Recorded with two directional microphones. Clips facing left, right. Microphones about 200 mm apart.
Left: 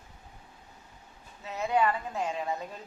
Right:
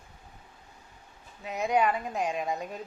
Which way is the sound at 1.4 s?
15° right (ahead or behind).